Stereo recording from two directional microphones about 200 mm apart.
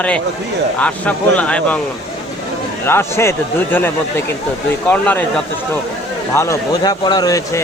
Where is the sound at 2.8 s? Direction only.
10° left (ahead or behind).